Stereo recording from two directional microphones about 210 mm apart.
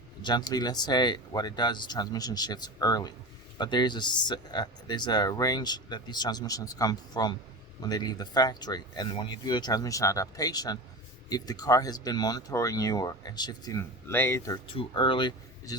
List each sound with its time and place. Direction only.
0.2 s speech: 20° left (ahead or behind)